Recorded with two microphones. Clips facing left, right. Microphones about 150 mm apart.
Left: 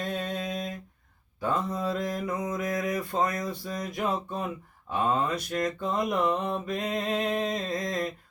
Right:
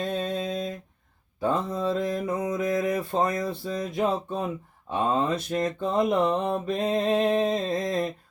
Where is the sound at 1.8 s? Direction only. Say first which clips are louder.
Right 4 dB; 25° right (ahead or behind).